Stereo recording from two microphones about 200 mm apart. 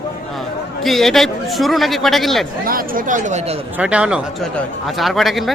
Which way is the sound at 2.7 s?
45° right (ahead or behind).